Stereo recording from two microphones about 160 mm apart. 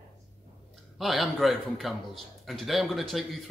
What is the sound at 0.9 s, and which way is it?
Speech, centre (ahead or behind).